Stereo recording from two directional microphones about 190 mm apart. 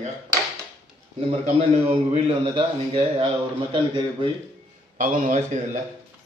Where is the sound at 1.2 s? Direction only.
35° right (ahead or behind).